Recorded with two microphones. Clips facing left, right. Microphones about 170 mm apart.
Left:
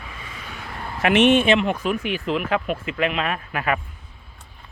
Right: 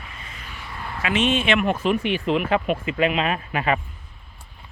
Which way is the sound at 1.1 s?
70° left (ahead or behind).